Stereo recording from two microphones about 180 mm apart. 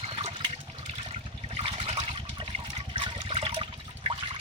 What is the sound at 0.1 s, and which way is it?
Toilet flush, 30° right (ahead or behind).